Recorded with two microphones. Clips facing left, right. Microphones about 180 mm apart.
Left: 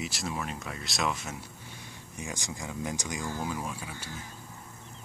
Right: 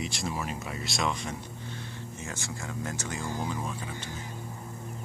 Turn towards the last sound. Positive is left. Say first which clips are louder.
# right 2 dB
turn(degrees=10)  # may be behind; listen again after turning